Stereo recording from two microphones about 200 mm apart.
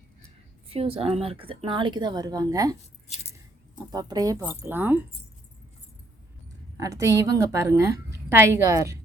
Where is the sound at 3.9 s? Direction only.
20° right (ahead or behind).